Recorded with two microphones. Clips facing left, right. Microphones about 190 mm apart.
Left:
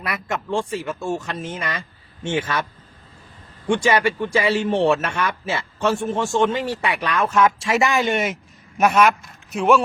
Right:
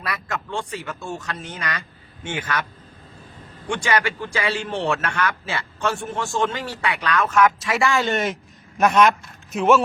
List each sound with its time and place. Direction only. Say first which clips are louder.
0.0 s speech: left 2 dB; 20° left (ahead or behind)
3.7 s a man's voice: left 4 dB; 25° left (ahead or behind); by 9.8 s centre (ahead or behind)